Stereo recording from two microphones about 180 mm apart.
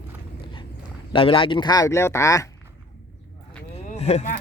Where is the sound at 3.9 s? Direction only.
35° left (ahead or behind).